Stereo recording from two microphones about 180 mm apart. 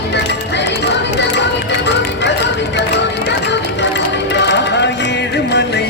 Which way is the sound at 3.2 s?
75° left (ahead or behind).